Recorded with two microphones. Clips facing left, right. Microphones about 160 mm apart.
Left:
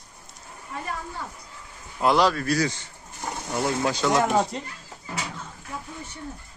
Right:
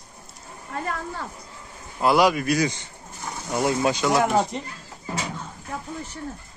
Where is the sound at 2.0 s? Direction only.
10° right (ahead or behind).